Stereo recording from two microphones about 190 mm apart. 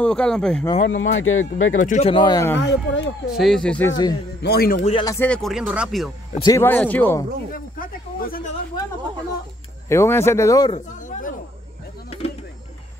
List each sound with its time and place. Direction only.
0.0 s speech: 5° left (ahead or behind)
0.8 s speech: 80° left
1.8 s speech: 40° left (ahead or behind); by 2.6 s 15° left (ahead or behind)
2.6 s speech: 75° left (ahead or behind)
3.3 s speech: centre (ahead or behind)
3.9 s speech: 20° left (ahead or behind)
4.4 s a man's voice: 55° left (ahead or behind)
5.0 s speech: 10° left (ahead or behind)
6.3 s speech: 20° left (ahead or behind)
6.6 s speech: 10° left (ahead or behind)
7.5 s speech: 50° left (ahead or behind)
9.8 s speech: 15° left (ahead or behind)
10.7 s a sound: 40° left (ahead or behind)